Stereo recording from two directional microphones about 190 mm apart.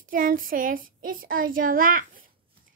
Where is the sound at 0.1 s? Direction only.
45° right (ahead or behind).